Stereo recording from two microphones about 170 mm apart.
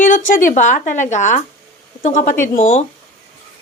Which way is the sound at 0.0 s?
50° left (ahead or behind).